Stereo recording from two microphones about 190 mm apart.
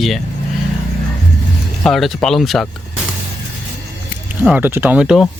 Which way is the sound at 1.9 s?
Centre (ahead or behind).